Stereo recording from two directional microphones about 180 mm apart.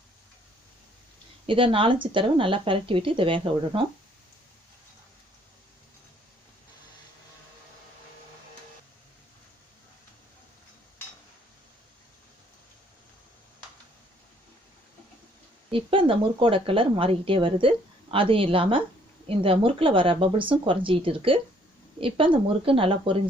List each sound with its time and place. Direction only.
1.5 s a woman's voice: 30° right (ahead or behind)
15.7 s a woman's voice: 30° right (ahead or behind)